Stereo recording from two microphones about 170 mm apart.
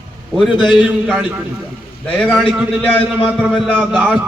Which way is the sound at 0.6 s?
Centre (ahead or behind).